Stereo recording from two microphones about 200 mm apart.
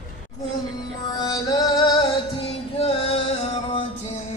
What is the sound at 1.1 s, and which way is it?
Music, 20° left (ahead or behind).